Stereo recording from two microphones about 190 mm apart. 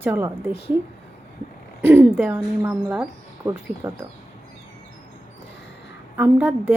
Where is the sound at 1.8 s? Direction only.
10° right (ahead or behind).